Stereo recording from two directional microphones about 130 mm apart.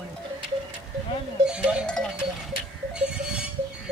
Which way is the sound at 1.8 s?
5° left (ahead or behind).